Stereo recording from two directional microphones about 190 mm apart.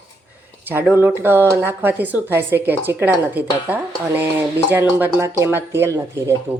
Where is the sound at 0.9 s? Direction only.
10° right (ahead or behind).